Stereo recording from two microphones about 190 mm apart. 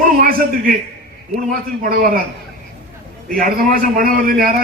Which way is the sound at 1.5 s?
50° right (ahead or behind).